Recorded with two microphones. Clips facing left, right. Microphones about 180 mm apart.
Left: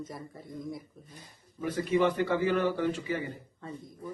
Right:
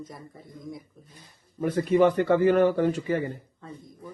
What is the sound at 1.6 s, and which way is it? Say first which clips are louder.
A man's voice: right 6 dB; 50° right (ahead or behind).